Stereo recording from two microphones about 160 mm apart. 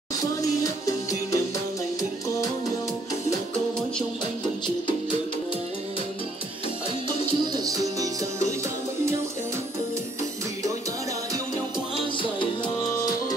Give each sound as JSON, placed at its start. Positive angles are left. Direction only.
{"t": 0.2, "sound": "music", "side_deg": 20}
{"t": 7.5, "sound": "music", "side_deg": -20}